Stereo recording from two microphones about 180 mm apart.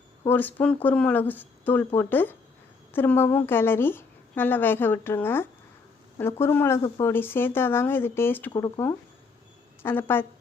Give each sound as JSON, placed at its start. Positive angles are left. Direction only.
{"t": 0.3, "sound": "a woman's voice", "side_deg": 10}
{"t": 8.5, "sound": "a woman's voice", "side_deg": 20}